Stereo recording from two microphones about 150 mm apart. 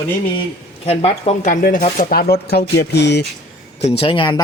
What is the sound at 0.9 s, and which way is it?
Speech, 40° left (ahead or behind).